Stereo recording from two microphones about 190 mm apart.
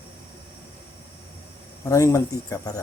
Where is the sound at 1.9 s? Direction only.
15° left (ahead or behind).